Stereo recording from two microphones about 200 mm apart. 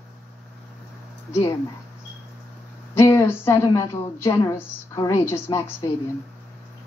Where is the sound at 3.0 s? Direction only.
15° left (ahead or behind).